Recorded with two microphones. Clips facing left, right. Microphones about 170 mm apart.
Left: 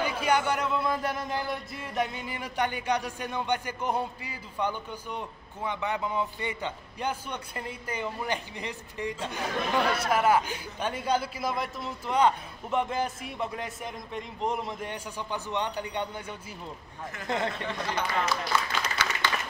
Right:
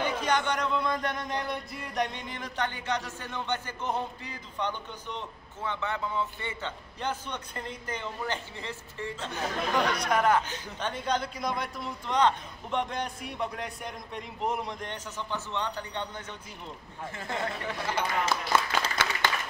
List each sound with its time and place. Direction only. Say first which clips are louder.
0.0 s speech: left 2 dB; 10° left (ahead or behind)
18.3 s applause: right 2 dB; 50° right (ahead or behind)